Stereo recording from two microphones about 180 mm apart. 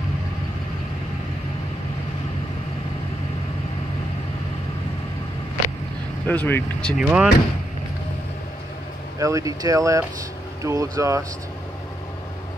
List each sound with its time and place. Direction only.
6.2 s speech: 10° left (ahead or behind)
7.0 s speech: 5° right (ahead or behind)
9.2 s speech: 20° right (ahead or behind)